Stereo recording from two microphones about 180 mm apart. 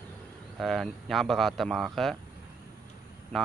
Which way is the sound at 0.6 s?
Centre (ahead or behind).